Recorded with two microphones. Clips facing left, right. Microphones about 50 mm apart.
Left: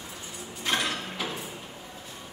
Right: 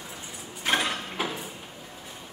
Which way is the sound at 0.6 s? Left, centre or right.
Centre.